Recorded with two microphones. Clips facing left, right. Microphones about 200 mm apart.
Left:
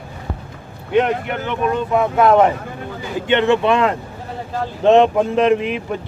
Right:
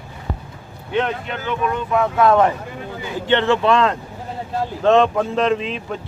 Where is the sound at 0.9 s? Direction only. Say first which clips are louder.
Left 5 dB; 15° left (ahead or behind).